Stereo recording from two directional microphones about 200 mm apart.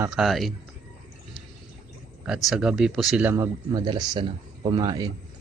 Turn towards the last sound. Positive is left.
turn(degrees=-20)  # may be behind; listen again after turning